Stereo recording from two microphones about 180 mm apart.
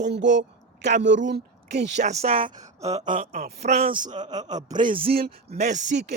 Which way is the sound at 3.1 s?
40° right (ahead or behind).